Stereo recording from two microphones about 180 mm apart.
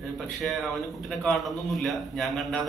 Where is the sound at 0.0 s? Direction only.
Centre (ahead or behind).